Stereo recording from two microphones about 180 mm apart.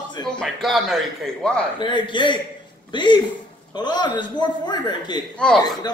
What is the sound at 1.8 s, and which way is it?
A man's voice, 25° left (ahead or behind).